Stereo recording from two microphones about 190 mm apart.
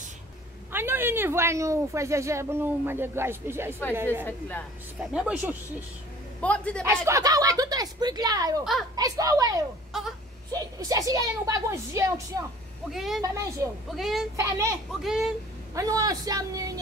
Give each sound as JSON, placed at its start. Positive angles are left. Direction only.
{"t": 0.7, "sound": "speech", "side_deg": -10}
{"t": 4.3, "sound": "a woman's voice", "side_deg": 10}
{"t": 5.1, "sound": "speech", "side_deg": -5}
{"t": 6.4, "sound": "a woman's voice", "side_deg": 5}
{"t": 6.8, "sound": "a woman's voice", "side_deg": -15}
{"t": 9.9, "sound": "wail", "side_deg": 0}
{"t": 10.5, "sound": "speech", "side_deg": -20}
{"t": 12.9, "sound": "speech", "side_deg": 0}
{"t": 13.2, "sound": "speech", "side_deg": -15}
{"t": 13.9, "sound": "speech", "side_deg": 0}
{"t": 14.3, "sound": "speech", "side_deg": -15}
{"t": 14.9, "sound": "speech", "side_deg": 0}
{"t": 15.7, "sound": "a man's voice", "side_deg": -20}